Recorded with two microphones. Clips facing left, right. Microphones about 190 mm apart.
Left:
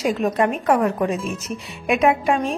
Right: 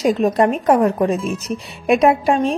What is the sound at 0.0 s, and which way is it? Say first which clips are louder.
A woman's voice: right 4 dB; 35° right (ahead or behind).